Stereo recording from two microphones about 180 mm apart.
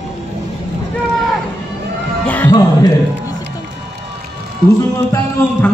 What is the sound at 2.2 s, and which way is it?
Music, 10° left (ahead or behind).